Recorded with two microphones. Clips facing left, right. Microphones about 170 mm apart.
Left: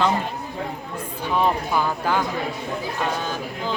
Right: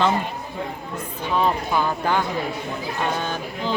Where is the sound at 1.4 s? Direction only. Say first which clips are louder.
Even; 5° left (ahead or behind).